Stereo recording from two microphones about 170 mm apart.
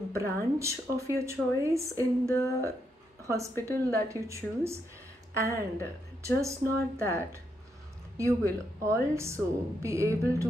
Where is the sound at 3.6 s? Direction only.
15° right (ahead or behind).